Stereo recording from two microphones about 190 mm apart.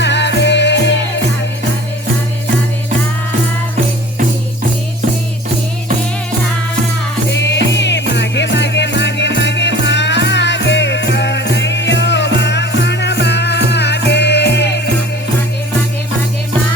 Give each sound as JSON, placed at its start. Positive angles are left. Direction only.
{"t": 0.0, "sound": "music", "side_deg": 65}
{"t": 7.3, "sound": "music", "side_deg": 65}